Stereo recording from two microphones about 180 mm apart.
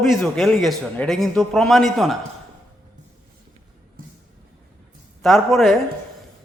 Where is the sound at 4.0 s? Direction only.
50° right (ahead or behind).